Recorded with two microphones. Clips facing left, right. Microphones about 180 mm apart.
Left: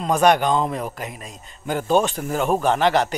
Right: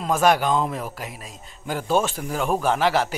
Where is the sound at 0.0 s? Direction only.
Centre (ahead or behind).